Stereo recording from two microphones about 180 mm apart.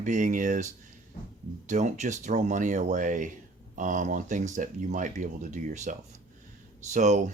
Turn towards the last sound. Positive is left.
turn(degrees=-40)  # may be behind; listen again after turning